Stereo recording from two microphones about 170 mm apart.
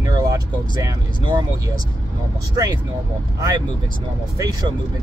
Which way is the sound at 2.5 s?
25° right (ahead or behind).